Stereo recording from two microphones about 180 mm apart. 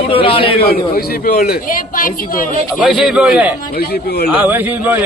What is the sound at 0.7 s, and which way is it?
Speech, 55° left (ahead or behind).